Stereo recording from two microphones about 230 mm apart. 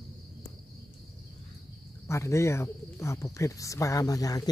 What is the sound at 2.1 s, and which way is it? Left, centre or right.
Speech, centre.